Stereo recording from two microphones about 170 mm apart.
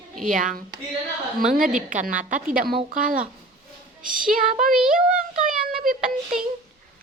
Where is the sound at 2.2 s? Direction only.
50° right (ahead or behind).